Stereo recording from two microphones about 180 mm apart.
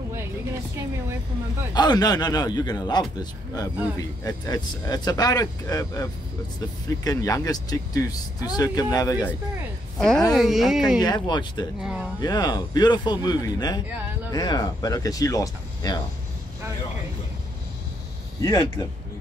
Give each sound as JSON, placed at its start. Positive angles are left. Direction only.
{"t": 1.7, "sound": "speech", "side_deg": 20}
{"t": 7.1, "sound": "speech", "side_deg": 20}
{"t": 9.9, "sound": "a woman's voice", "side_deg": 5}
{"t": 11.0, "sound": "speech", "side_deg": 25}
{"t": 11.8, "sound": "speech", "side_deg": -5}
{"t": 12.2, "sound": "speech", "side_deg": 20}
{"t": 18.4, "sound": "speech", "side_deg": 20}